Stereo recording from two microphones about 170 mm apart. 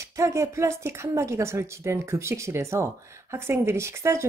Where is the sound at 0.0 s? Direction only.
15° right (ahead or behind).